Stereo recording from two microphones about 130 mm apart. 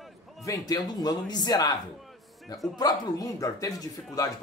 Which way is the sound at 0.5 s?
30° left (ahead or behind).